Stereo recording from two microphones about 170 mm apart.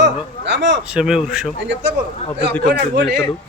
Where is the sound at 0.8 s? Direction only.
5° right (ahead or behind).